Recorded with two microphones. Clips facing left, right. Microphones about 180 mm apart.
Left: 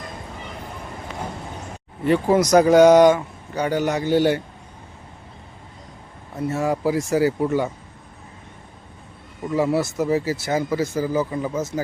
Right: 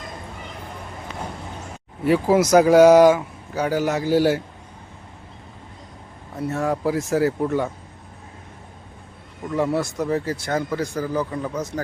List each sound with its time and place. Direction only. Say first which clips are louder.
2.0 s speech: even; 5° right (ahead or behind)
6.3 s speech: left 1 dB; centre (ahead or behind)
9.5 s speech: left 2 dB; 5° left (ahead or behind)